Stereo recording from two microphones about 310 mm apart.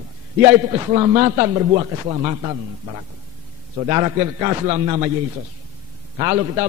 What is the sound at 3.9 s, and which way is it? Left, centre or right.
A man's voice, centre.